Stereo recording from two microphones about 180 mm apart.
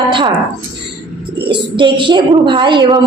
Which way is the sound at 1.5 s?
25° right (ahead or behind).